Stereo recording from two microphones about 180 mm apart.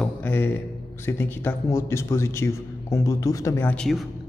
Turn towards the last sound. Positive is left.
turn(degrees=0)  # may be behind; listen again after turning